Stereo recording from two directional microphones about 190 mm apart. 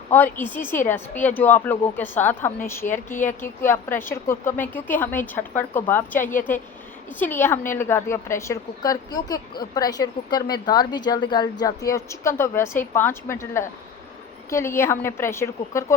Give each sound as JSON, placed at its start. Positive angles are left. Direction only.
{"t": 0.1, "sound": "a woman's voice", "side_deg": 10}